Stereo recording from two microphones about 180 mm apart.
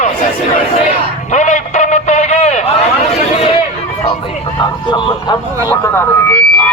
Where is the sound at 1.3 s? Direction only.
40° left (ahead or behind).